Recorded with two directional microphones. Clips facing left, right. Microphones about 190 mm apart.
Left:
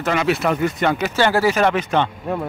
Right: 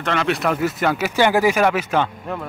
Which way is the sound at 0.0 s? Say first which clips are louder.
Left 2 dB; 5° left (ahead or behind).